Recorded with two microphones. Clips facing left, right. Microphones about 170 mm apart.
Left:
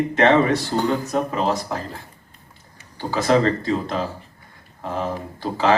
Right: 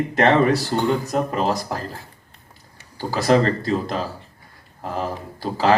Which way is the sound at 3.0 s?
35° right (ahead or behind).